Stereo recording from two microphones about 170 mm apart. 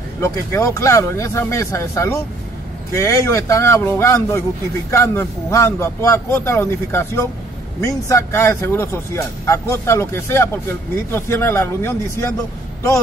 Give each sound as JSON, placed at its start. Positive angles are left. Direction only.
{"t": 0.2, "sound": "speech", "side_deg": 15}